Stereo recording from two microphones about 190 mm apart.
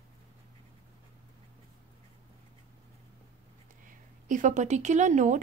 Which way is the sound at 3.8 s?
40° right (ahead or behind).